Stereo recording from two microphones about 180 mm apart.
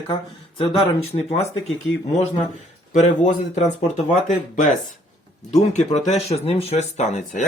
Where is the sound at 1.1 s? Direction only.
30° left (ahead or behind).